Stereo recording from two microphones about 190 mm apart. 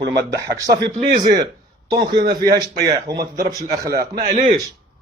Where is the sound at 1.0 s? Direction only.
55° right (ahead or behind).